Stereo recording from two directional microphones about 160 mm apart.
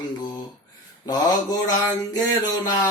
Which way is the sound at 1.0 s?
25° left (ahead or behind).